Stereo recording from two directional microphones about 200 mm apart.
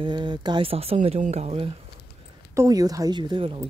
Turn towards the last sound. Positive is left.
turn(degrees=-25)  # may be behind; listen again after turning